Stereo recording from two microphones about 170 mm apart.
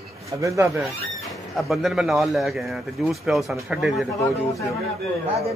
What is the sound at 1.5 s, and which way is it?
A man's voice, centre (ahead or behind).